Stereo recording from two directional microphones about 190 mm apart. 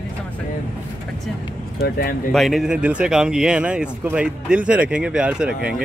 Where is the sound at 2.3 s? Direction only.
Centre (ahead or behind).